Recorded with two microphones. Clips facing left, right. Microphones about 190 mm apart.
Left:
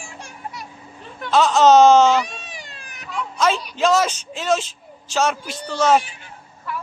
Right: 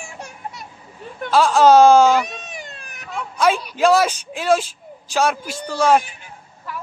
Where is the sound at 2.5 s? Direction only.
50° right (ahead or behind).